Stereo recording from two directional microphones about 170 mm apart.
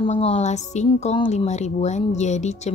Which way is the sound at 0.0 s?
35° left (ahead or behind).